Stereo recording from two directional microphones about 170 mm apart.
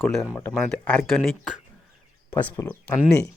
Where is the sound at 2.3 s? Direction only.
10° left (ahead or behind).